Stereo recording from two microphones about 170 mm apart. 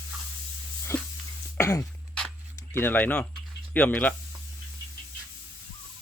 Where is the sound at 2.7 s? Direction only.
10° left (ahead or behind).